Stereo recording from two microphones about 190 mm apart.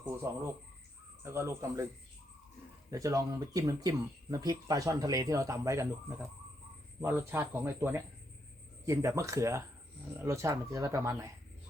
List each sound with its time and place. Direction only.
1.2 s speech: 15° right (ahead or behind)
2.9 s speech: 15° right (ahead or behind)